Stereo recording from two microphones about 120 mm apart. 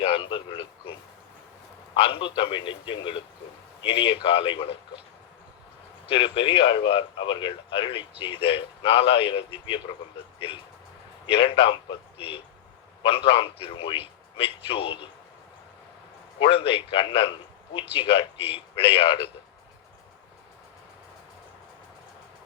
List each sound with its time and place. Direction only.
0.0 s a sound: 50° left (ahead or behind)
2.0 s speech: 50° left (ahead or behind)
6.1 s speech: 50° left (ahead or behind)
11.3 s speech: 50° left (ahead or behind)
16.4 s speech: 50° left (ahead or behind)